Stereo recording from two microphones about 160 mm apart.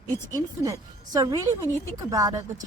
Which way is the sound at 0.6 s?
25° right (ahead or behind).